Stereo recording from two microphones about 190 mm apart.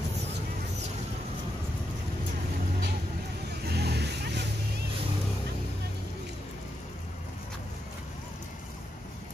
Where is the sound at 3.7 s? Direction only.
60° right (ahead or behind).